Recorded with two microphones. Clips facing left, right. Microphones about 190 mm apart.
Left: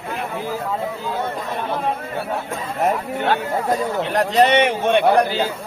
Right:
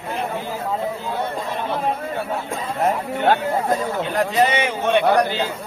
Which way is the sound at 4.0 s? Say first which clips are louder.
Left 4 dB; 70° left (ahead or behind).